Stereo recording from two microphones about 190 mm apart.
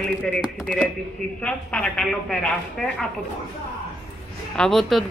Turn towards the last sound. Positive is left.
turn(degrees=0)  # may be behind; listen again after turning